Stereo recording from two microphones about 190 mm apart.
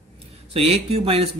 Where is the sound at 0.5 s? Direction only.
30° right (ahead or behind).